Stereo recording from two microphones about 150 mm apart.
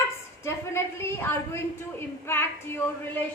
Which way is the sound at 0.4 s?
15° left (ahead or behind).